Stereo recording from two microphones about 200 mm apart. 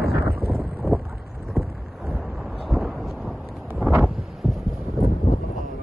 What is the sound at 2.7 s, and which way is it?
Thunder, centre (ahead or behind).